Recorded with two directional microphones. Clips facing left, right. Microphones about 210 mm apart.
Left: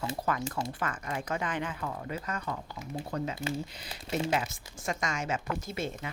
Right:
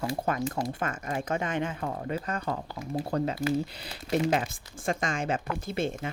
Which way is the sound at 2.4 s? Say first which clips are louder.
Right 5 dB; 45° right (ahead or behind).